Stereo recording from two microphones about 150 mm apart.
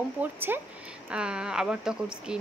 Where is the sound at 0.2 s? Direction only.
15° right (ahead or behind).